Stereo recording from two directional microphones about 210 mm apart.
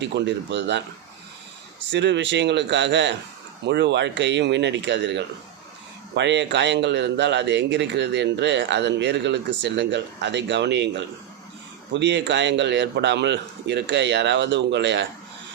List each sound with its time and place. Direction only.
0.0 s speech: 55° right (ahead or behind)
1.9 s speech: 55° right (ahead or behind)
11.9 s speech: 55° right (ahead or behind)